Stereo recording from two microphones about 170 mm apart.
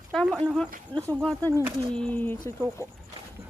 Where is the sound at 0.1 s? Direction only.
5° left (ahead or behind).